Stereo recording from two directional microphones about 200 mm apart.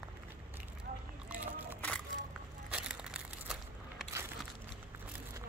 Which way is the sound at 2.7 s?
5° right (ahead or behind).